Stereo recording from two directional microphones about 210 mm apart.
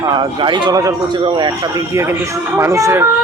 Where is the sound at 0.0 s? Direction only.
20° right (ahead or behind).